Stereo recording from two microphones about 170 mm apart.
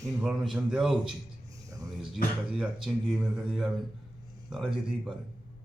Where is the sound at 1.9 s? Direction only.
Centre (ahead or behind).